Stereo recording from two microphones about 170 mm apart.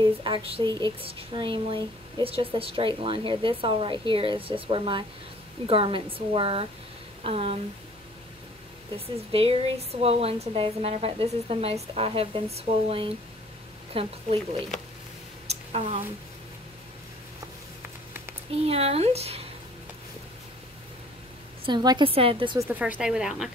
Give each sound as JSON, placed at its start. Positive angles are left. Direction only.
{"t": 0.0, "sound": "a woman's voice", "side_deg": -30}
{"t": 8.9, "sound": "a woman's voice", "side_deg": -35}
{"t": 15.4, "sound": "a sound", "side_deg": -35}
{"t": 18.7, "sound": "a woman's voice", "side_deg": -35}
{"t": 21.6, "sound": "a woman's voice", "side_deg": -25}
{"t": 22.6, "sound": "speech", "side_deg": -10}